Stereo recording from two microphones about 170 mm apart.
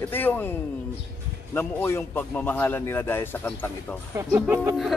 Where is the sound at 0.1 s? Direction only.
10° left (ahead or behind).